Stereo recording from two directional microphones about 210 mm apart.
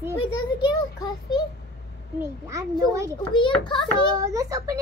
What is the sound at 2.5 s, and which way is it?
Speech, 15° right (ahead or behind).